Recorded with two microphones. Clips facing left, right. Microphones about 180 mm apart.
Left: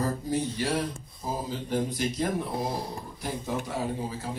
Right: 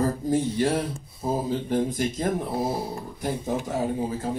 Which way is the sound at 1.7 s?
50° right (ahead or behind).